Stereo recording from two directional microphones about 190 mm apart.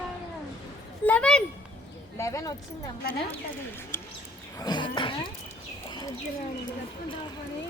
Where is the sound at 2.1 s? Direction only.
15° left (ahead or behind).